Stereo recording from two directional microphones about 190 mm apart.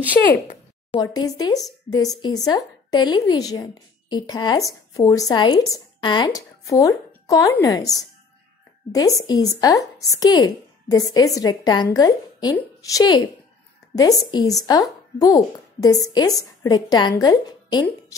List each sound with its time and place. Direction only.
1.1 s a woman's voice: 20° left (ahead or behind)